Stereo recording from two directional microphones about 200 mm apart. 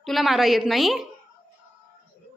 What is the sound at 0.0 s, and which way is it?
A woman's voice, centre (ahead or behind).